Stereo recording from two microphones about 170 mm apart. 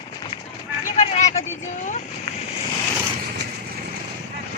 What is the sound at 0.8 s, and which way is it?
Vehicle, 45° left (ahead or behind).